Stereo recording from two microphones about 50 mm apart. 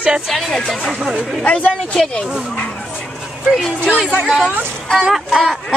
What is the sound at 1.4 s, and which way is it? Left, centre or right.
Speech, left.